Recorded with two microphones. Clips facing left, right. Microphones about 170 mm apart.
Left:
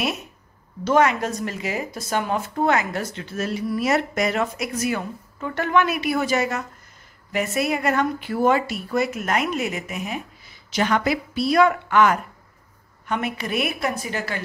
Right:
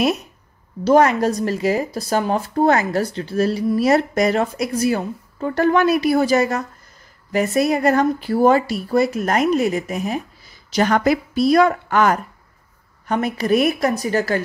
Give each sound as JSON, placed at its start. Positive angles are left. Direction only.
{"t": 0.8, "sound": "a woman's voice", "side_deg": -35}